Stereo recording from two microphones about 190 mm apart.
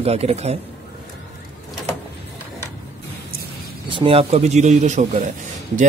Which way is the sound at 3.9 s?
30° right (ahead or behind).